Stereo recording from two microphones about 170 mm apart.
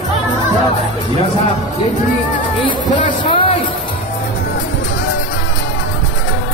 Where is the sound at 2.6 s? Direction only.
30° left (ahead or behind).